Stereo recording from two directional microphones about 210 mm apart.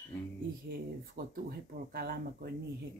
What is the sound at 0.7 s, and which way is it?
Speech, 45° right (ahead or behind).